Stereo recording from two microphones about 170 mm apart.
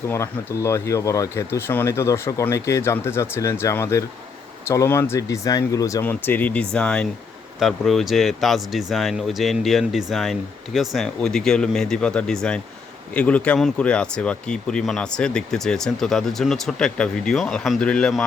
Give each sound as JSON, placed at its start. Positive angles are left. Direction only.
{"t": 0.1, "sound": "speech", "side_deg": 15}